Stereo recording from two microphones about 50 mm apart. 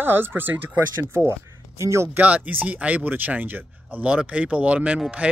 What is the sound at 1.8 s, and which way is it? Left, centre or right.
Speech, right.